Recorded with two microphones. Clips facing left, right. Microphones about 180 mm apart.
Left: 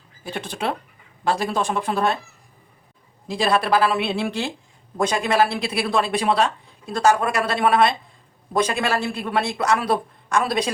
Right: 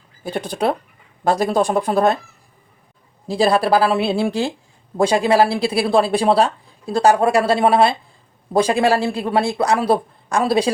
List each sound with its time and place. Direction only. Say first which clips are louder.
0.3 s speech: right 6 dB; 40° right (ahead or behind)
3.2 s speech: right 5 dB; 35° right (ahead or behind)